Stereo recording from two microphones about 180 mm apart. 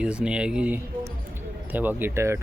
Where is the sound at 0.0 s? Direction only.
5° right (ahead or behind).